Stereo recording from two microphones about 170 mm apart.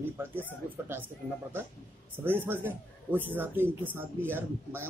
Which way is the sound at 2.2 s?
10° right (ahead or behind).